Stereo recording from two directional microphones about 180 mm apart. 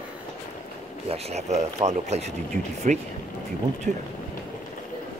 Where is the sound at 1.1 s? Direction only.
35° right (ahead or behind).